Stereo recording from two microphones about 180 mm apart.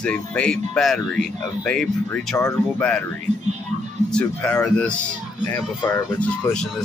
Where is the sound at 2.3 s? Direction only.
15° left (ahead or behind).